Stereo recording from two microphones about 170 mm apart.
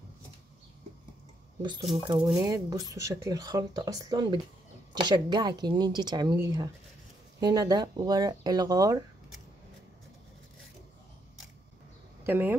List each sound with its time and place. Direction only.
1.6 s speech: 30° right (ahead or behind)
7.3 s speech: 20° right (ahead or behind)
12.2 s speech: 10° right (ahead or behind)